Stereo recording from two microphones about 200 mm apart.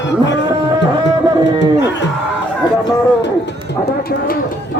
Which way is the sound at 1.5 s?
65° left (ahead or behind).